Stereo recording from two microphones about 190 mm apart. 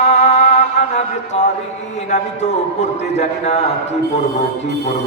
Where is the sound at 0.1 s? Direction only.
40° left (ahead or behind).